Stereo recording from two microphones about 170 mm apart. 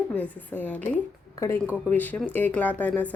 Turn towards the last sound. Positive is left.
turn(degrees=10)  # may be behind; listen again after turning